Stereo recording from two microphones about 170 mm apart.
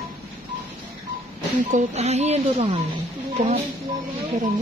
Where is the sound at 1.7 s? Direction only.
40° right (ahead or behind).